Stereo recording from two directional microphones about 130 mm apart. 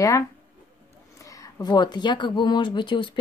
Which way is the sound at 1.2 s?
25° left (ahead or behind).